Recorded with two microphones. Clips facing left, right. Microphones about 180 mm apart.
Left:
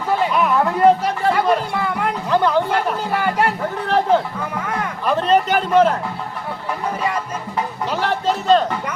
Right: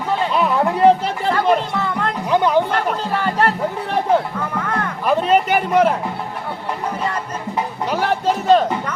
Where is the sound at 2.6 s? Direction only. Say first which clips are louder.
Even; 10° left (ahead or behind).